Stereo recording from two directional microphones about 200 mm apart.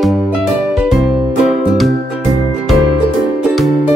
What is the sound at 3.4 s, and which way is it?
Music, centre (ahead or behind).